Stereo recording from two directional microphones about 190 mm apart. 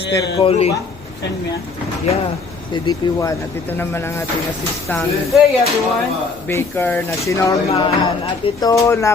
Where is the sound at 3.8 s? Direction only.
10° left (ahead or behind).